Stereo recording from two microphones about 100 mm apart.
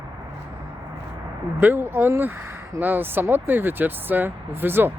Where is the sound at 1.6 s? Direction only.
20° right (ahead or behind).